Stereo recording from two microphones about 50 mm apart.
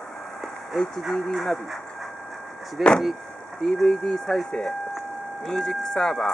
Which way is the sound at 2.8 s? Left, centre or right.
Centre.